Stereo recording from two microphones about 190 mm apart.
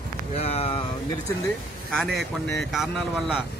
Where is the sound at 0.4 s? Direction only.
30° left (ahead or behind).